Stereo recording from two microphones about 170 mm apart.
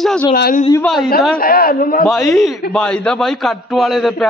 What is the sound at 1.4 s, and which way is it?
Speech, 60° left (ahead or behind).